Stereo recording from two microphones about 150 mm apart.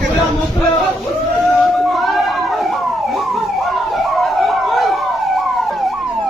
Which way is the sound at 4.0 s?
Centre (ahead or behind).